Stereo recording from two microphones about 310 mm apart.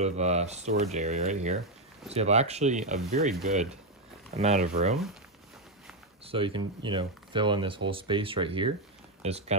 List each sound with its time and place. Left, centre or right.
0.0 s speech: right
6.2 s speech: centre